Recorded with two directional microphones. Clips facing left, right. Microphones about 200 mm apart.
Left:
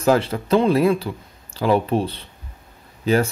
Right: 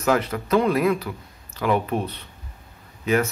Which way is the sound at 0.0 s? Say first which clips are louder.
Left 4 dB; 30° left (ahead or behind).